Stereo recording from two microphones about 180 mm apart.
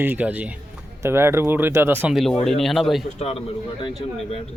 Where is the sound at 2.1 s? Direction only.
Centre (ahead or behind).